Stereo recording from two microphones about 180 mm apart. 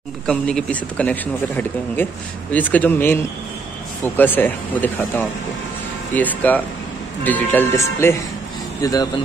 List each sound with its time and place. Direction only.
0.3 s speech: 5° left (ahead or behind); by 9.1 s 20° left (ahead or behind)